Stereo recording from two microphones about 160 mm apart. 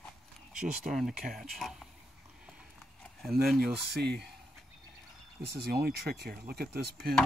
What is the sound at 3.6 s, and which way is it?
Speech, 90° right.